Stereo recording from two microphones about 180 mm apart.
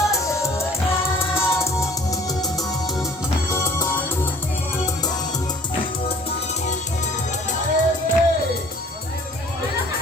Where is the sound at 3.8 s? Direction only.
10° left (ahead or behind).